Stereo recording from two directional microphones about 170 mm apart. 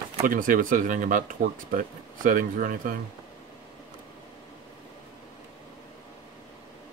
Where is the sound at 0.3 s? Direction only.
55° right (ahead or behind).